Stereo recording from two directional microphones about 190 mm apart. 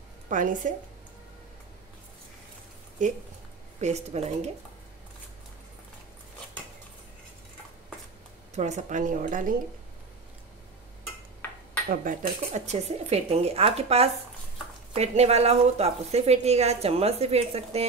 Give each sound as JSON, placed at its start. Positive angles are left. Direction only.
{"t": 0.3, "sound": "a woman's voice", "side_deg": -45}
{"t": 3.0, "sound": "a woman's voice", "side_deg": -40}
{"t": 8.5, "sound": "a woman's voice", "side_deg": -35}
{"t": 11.9, "sound": "a woman's voice", "side_deg": -45}